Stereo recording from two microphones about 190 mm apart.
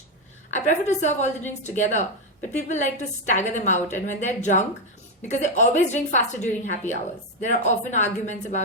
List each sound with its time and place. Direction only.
0.5 s a woman's voice: 40° left (ahead or behind)